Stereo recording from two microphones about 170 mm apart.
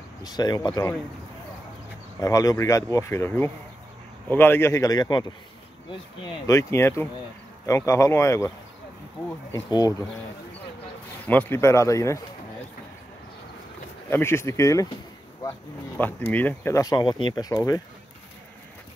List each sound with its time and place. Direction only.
0.2 s speech: 25° left (ahead or behind)
2.1 s speech: 20° left (ahead or behind)
9.5 s speech: 20° left (ahead or behind)
11.2 s speech: 10° left (ahead or behind)
14.1 s speech: 15° left (ahead or behind)
16.0 s speech: 10° left (ahead or behind)